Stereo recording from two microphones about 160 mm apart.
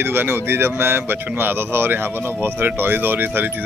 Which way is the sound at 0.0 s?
15° right (ahead or behind).